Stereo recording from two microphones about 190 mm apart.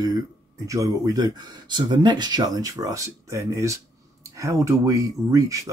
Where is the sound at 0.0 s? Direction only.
15° right (ahead or behind).